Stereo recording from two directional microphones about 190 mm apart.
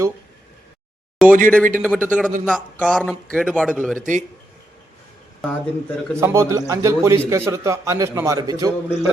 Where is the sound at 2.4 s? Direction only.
5° left (ahead or behind).